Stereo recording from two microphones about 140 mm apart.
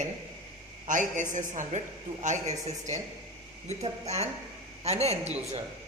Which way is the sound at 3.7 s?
50° right (ahead or behind).